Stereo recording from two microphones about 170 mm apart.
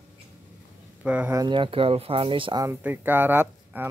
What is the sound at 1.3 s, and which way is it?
Speech, 25° right (ahead or behind).